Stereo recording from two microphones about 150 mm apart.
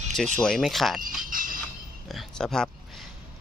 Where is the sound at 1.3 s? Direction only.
65° right (ahead or behind).